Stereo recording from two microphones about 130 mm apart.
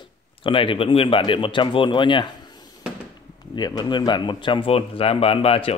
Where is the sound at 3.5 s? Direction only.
35° left (ahead or behind).